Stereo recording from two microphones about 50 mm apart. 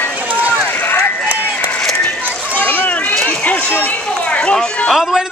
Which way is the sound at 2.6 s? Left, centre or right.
Left.